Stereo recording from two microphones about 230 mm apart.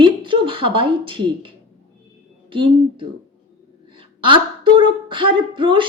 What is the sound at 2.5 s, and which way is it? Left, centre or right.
Speech, right.